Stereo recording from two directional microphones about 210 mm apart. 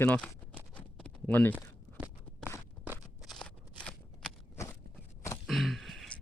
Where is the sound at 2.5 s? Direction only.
10° right (ahead or behind).